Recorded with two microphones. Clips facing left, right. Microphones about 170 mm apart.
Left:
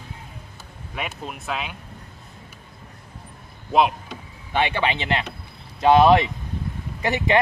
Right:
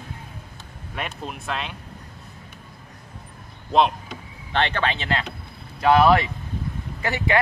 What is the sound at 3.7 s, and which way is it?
Speech, 5° left (ahead or behind).